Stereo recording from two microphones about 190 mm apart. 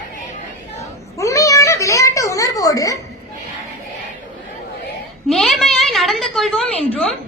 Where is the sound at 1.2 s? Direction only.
15° left (ahead or behind).